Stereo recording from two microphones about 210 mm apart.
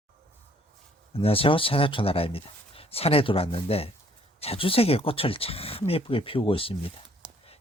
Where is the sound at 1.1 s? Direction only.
25° left (ahead or behind).